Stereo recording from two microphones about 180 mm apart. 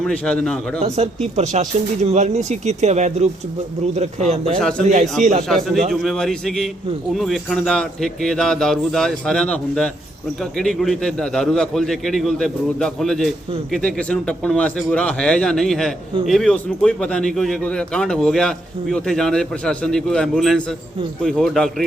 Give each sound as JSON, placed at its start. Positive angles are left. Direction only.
{"t": 0.0, "sound": "a man's voice", "side_deg": 5}
{"t": 0.8, "sound": "speech", "side_deg": -35}
{"t": 5.5, "sound": "a man's voice", "side_deg": 0}